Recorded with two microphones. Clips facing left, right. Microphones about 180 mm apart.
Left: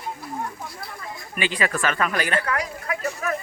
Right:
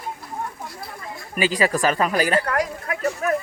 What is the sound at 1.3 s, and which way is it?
Speech, 40° right (ahead or behind).